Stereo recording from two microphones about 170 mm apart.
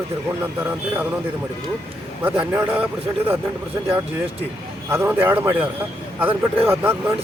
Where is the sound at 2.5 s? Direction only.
10° right (ahead or behind).